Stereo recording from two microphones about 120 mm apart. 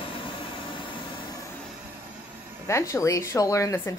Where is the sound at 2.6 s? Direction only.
25° left (ahead or behind).